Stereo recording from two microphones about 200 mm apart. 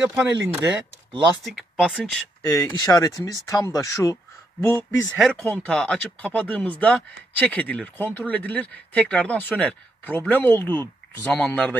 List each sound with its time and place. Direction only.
0.0 s speech: 10° right (ahead or behind)
2.8 s speech: 20° left (ahead or behind)
5.1 s speech: centre (ahead or behind)